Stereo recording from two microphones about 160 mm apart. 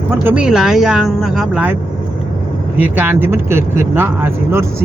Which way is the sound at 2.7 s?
10° right (ahead or behind).